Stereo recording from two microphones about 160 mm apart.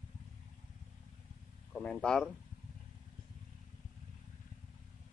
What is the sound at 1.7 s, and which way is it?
Speech, 5° left (ahead or behind).